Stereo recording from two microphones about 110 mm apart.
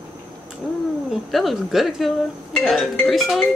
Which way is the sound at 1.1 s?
Centre (ahead or behind).